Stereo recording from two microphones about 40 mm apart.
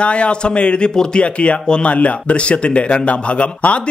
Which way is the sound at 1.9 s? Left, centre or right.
Left.